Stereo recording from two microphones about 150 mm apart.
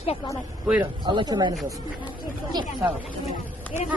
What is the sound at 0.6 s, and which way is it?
Speech, 10° right (ahead or behind).